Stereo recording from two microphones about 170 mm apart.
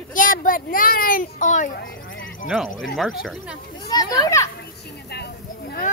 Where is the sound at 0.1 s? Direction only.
50° left (ahead or behind).